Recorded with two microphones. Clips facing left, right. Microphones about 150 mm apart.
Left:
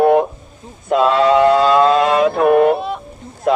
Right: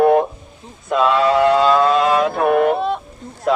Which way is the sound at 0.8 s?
25° left (ahead or behind).